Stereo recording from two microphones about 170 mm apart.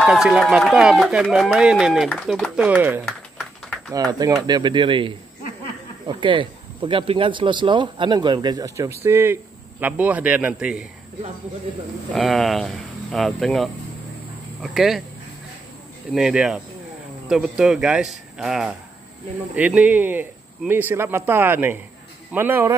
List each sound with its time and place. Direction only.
0.0 s speech: centre (ahead or behind)
2.6 s speech: 10° right (ahead or behind)
3.1 s a sound: centre (ahead or behind)
3.9 s speech: 20° right (ahead or behind); by 10.9 s 5° right (ahead or behind)
12.1 s speech: centre (ahead or behind)
16.1 s speech: centre (ahead or behind)